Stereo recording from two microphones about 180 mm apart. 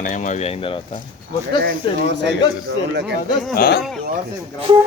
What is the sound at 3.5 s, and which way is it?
Speech, 60° left (ahead or behind).